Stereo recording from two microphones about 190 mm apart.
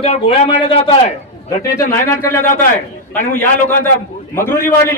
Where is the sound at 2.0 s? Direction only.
10° left (ahead or behind).